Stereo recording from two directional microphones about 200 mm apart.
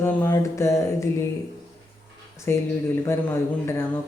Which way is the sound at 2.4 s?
15° left (ahead or behind).